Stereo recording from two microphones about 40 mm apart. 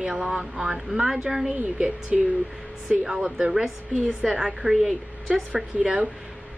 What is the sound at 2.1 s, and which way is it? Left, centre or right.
A woman's voice, right.